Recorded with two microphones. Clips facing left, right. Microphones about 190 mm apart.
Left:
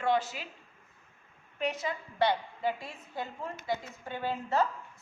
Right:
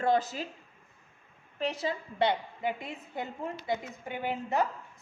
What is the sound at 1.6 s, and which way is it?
A woman's voice, 30° right (ahead or behind).